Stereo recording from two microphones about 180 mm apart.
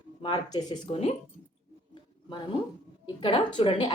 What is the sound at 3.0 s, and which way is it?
Speech, 30° left (ahead or behind).